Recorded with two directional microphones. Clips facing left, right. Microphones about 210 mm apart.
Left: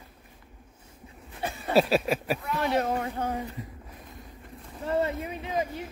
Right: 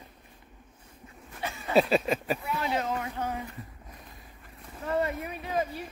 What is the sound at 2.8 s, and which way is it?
Speech, 35° left (ahead or behind).